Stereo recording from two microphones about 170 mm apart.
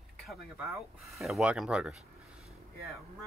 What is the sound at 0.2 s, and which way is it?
Speech, centre (ahead or behind).